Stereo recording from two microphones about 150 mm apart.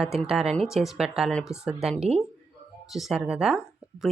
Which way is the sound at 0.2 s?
5° right (ahead or behind).